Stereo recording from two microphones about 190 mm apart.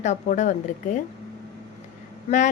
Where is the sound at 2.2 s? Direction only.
40° left (ahead or behind).